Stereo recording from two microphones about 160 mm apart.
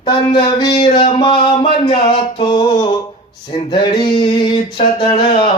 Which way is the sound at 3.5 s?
30° left (ahead or behind).